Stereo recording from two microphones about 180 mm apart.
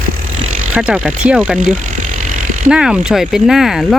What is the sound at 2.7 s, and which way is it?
Speech, 5° right (ahead or behind).